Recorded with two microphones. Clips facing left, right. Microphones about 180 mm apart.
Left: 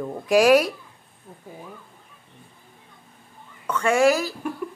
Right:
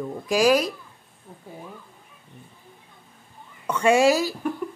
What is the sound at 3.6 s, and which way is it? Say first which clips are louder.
Speech: right 1 dB; 20° right (ahead or behind).